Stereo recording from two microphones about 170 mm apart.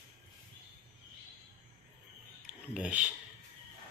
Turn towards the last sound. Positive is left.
turn(degrees=-5)  # may be behind; listen again after turning